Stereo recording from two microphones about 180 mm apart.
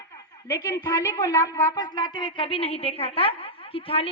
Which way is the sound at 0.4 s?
20° left (ahead or behind).